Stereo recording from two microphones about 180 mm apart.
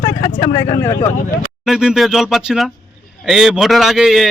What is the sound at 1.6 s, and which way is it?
A man's voice, 5° right (ahead or behind).